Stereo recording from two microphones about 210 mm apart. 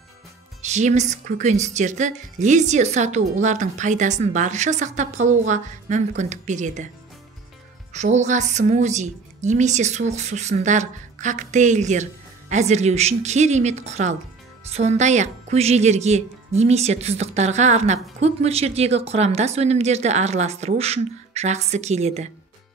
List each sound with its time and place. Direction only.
0.6 s a woman's voice: 35° right (ahead or behind)
7.9 s a woman's voice: 35° right (ahead or behind)